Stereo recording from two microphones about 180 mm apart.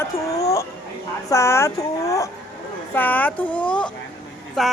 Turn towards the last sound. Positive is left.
turn(degrees=0)  # may be behind; listen again after turning